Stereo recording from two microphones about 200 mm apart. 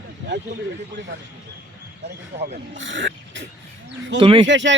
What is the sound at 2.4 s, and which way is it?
Speech, 70° right (ahead or behind).